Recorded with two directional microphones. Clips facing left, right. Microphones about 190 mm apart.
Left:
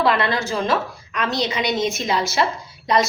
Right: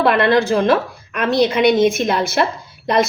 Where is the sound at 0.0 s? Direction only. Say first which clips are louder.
Right 6 dB; 60° right (ahead or behind).